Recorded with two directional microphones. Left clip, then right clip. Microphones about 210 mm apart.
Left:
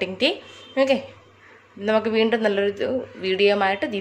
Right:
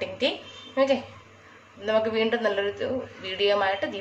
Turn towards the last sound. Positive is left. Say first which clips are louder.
# left 3 dB
turn(degrees=50)  # may be behind; listen again after turning